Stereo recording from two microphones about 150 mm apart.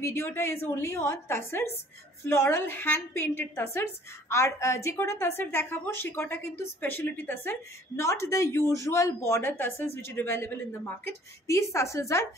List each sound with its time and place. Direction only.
0.0 s a woman's voice: 15° left (ahead or behind)